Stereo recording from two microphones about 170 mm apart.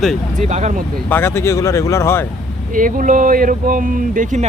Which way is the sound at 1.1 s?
15° left (ahead or behind).